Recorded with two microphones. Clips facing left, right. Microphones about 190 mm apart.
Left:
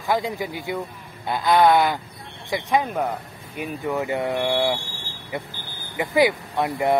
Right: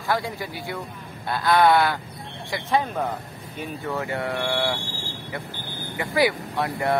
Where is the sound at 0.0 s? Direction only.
20° left (ahead or behind).